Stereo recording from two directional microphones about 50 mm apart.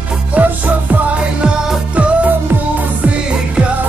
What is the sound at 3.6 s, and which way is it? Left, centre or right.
Music, centre.